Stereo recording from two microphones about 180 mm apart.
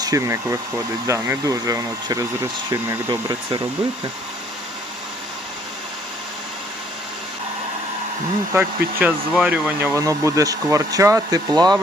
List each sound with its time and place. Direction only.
0.0 s speech: 15° right (ahead or behind)
8.5 s speech: 10° right (ahead or behind)